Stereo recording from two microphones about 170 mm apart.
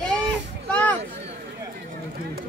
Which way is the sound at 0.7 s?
10° left (ahead or behind).